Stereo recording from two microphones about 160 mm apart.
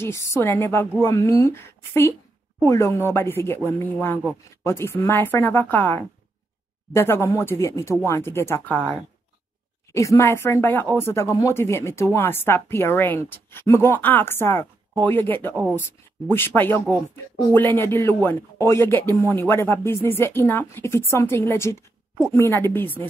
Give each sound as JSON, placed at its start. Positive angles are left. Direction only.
{"t": 0.0, "sound": "speech", "side_deg": 20}
{"t": 9.9, "sound": "speech", "side_deg": 20}